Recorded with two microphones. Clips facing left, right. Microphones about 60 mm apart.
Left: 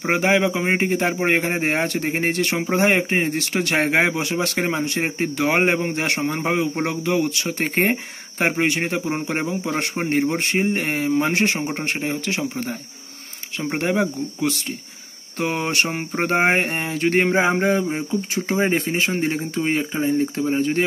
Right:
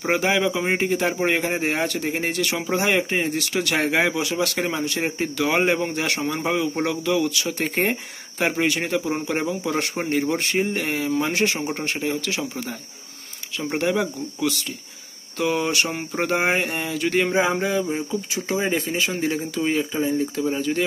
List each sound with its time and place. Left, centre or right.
0.0 s speech: left